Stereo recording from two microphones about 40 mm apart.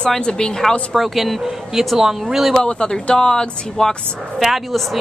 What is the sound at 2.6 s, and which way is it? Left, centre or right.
A woman's voice, centre.